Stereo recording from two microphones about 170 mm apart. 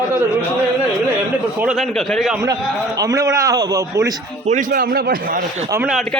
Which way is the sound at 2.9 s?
20° right (ahead or behind).